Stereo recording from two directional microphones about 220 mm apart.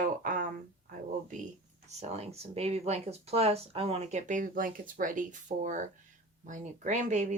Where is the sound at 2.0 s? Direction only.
30° right (ahead or behind).